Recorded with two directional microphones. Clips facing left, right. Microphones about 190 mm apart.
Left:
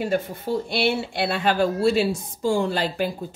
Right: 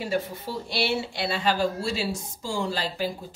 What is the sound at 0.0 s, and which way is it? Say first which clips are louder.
Speech: left 4 dB; 50° left (ahead or behind).